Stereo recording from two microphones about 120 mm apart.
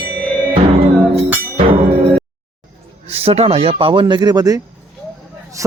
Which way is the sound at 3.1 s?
55° right (ahead or behind).